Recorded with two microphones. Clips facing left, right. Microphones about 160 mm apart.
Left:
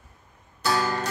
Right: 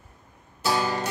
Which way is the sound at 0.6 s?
20° right (ahead or behind).